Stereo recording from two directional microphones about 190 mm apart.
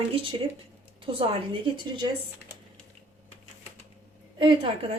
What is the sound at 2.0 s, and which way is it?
Speech, 25° right (ahead or behind).